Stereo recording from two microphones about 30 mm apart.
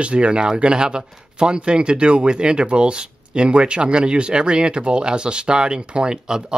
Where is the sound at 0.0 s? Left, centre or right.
Right.